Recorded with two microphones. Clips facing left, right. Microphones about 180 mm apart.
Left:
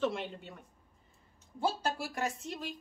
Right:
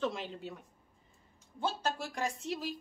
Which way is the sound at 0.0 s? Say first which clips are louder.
Left 2 dB; centre (ahead or behind).